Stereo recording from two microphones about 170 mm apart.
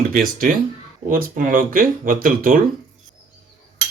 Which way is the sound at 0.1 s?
55° right (ahead or behind).